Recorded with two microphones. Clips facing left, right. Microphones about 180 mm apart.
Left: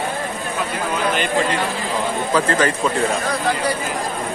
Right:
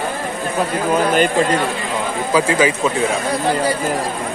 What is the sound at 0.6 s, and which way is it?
Speech, 45° right (ahead or behind).